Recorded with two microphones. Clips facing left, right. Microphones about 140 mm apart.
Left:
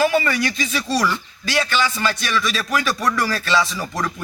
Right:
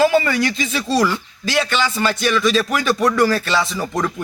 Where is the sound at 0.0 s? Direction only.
25° right (ahead or behind).